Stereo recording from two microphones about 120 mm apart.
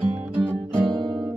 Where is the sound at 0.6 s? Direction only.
45° right (ahead or behind).